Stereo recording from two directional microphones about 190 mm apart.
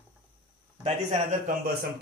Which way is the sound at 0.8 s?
35° right (ahead or behind).